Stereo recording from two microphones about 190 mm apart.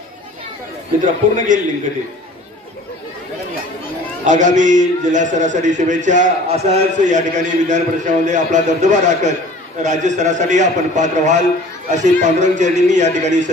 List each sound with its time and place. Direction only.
1.3 s a man's voice: 45° right (ahead or behind)
4.2 s a man's voice: 40° right (ahead or behind)